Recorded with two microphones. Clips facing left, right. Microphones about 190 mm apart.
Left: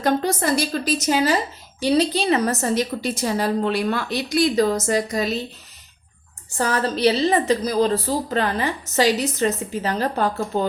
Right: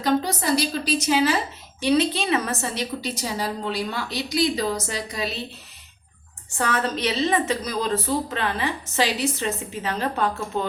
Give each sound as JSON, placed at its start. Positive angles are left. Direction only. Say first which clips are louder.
{"t": 0.0, "sound": "a woman's voice", "louder": "left 2 dB", "side_deg": 50}
{"t": 6.6, "sound": "a woman's voice", "louder": "left 4 dB", "side_deg": 35}